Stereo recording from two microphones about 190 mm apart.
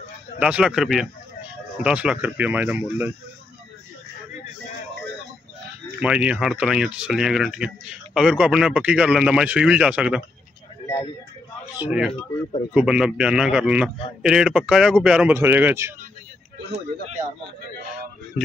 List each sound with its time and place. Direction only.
0.4 s speech: 5° right (ahead or behind)
5.9 s speech: 5° right (ahead or behind)
11.8 s speech: 5° right (ahead or behind)
12.1 s speech: 30° left (ahead or behind)
12.7 s speech: 5° right (ahead or behind)